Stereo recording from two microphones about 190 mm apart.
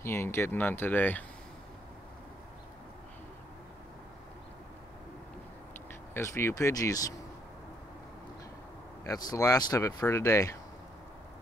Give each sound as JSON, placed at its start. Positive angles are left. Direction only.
{"t": 0.0, "sound": "speech", "side_deg": 15}
{"t": 6.1, "sound": "speech", "side_deg": 15}
{"t": 9.0, "sound": "speech", "side_deg": 20}